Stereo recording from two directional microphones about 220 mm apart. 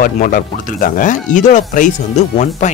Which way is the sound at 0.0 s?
40° left (ahead or behind).